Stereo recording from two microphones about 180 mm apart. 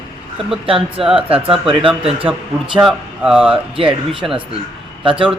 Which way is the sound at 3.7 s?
30° right (ahead or behind).